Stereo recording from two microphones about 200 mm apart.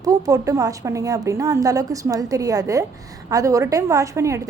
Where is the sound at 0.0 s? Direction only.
15° right (ahead or behind).